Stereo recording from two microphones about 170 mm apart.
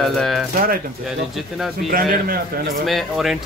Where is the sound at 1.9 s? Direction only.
55° right (ahead or behind).